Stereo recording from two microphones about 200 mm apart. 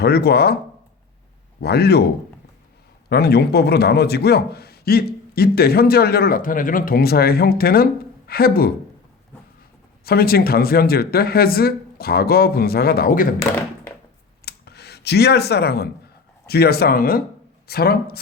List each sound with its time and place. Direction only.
0.0 s a man's voice: 55° left (ahead or behind)
1.6 s a man's voice: 55° left (ahead or behind)
10.0 s a man's voice: 50° left (ahead or behind)
14.4 s clicking: 55° left (ahead or behind)
16.5 s a man's voice: 50° left (ahead or behind)